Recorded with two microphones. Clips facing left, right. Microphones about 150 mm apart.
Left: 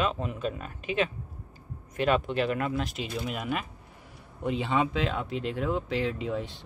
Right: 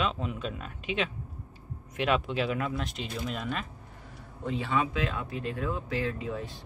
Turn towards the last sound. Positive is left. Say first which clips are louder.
# left 3 dB
turn(degrees=20)  # may be behind; listen again after turning